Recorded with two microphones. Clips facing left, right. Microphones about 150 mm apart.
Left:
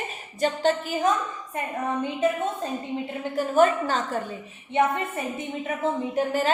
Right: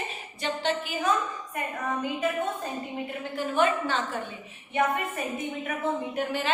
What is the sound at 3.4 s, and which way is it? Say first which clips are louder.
Speech: left 5 dB; 40° left (ahead or behind).